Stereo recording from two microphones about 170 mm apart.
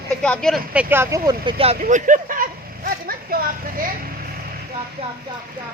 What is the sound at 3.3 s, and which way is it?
Speech, 60° right (ahead or behind).